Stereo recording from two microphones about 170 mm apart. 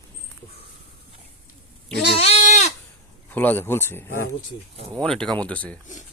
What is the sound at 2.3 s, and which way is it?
Goat, 40° left (ahead or behind).